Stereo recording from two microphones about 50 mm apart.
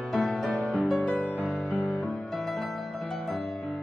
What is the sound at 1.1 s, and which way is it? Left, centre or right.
Music, left.